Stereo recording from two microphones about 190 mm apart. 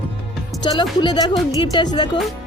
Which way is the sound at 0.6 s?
25° left (ahead or behind).